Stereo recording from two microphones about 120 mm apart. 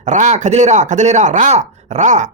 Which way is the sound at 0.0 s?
90° right.